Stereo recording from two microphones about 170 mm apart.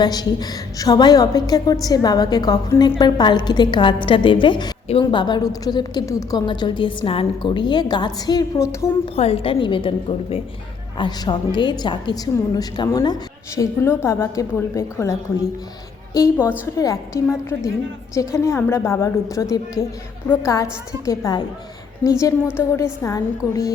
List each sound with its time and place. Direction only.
0.0 s a woman's voice: 25° left (ahead or behind)
9.1 s a woman's voice: 35° left (ahead or behind); by 15.1 s 20° left (ahead or behind)
16.1 s a woman's voice: 20° left (ahead or behind)